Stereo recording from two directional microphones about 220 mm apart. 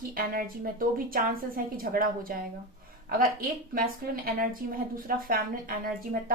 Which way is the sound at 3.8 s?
40° right (ahead or behind).